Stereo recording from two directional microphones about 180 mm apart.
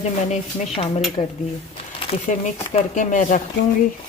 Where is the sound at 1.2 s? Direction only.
30° left (ahead or behind).